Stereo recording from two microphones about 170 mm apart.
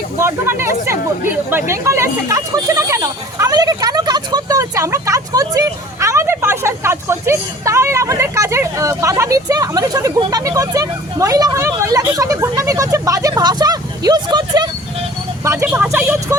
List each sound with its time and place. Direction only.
0.2 s speech: 15° right (ahead or behind)
15.4 s vehicle: 10° right (ahead or behind)